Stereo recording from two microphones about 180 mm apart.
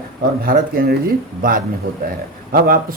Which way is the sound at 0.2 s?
60° right (ahead or behind).